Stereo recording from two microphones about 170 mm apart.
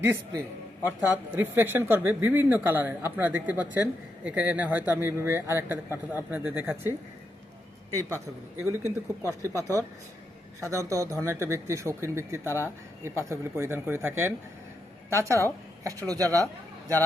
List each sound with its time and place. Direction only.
0.0 s speech: 15° right (ahead or behind)
7.9 s speech: 15° right (ahead or behind)
9.5 s speech: 15° left (ahead or behind)
10.7 s speech: 20° right (ahead or behind)
12.5 s speech: 15° left (ahead or behind)
13.2 s speech: 15° right (ahead or behind)